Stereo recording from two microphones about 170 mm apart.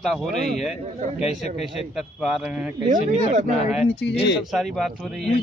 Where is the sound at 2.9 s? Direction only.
45° right (ahead or behind).